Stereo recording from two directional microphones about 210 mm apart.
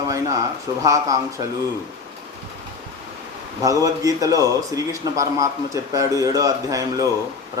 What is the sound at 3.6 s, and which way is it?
A man's voice, 15° right (ahead or behind).